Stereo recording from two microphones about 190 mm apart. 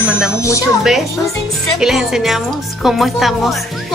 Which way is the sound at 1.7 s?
Centre (ahead or behind).